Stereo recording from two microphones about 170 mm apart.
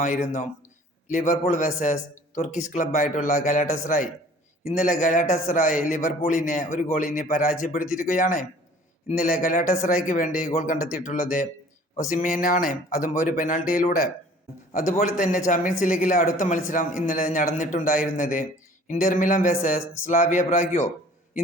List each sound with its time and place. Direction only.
0.0 s a man's voice: 50° left (ahead or behind)